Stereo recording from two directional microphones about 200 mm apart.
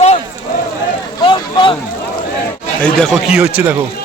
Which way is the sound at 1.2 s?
25° left (ahead or behind).